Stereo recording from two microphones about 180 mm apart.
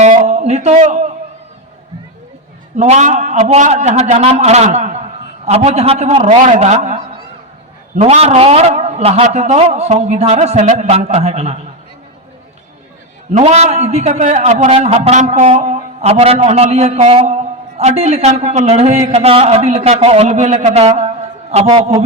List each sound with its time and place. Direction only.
0.0 s a sound: 40° right (ahead or behind)
2.7 s a man's voice: 40° right (ahead or behind)
13.3 s a man's voice: 35° right (ahead or behind)